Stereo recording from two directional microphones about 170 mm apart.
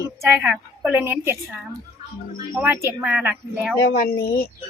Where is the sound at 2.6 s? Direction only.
10° right (ahead or behind).